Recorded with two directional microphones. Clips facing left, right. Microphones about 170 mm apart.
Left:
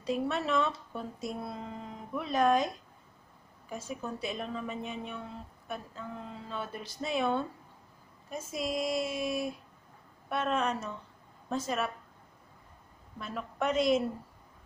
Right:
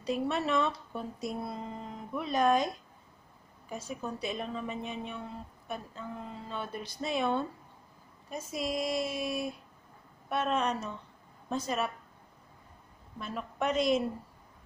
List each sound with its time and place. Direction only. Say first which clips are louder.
0.0 s speech: even; centre (ahead or behind)
3.7 s speech: even; 5° left (ahead or behind)
6.5 s a woman's voice: even; centre (ahead or behind)
13.2 s speech: even; centre (ahead or behind)